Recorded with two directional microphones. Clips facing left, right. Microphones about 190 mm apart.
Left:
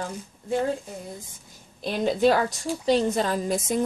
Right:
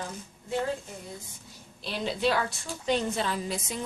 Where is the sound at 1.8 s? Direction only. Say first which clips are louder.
Left 8 dB; 45° left (ahead or behind).